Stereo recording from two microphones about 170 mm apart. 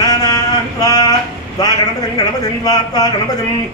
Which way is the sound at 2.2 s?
20° left (ahead or behind).